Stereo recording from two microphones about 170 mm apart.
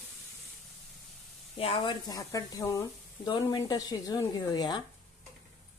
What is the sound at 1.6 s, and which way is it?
Speech, 35° left (ahead or behind).